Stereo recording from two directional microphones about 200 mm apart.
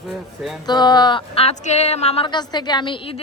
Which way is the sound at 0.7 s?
20° left (ahead or behind).